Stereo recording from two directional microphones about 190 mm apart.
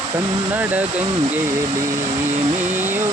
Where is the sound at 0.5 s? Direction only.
10° right (ahead or behind).